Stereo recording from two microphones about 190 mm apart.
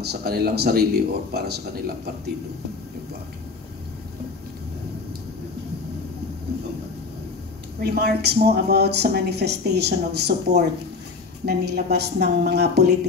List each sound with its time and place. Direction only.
0.0 s speech: 55° right (ahead or behind)
7.8 s speech: 55° right (ahead or behind)
11.4 s speech: 60° right (ahead or behind)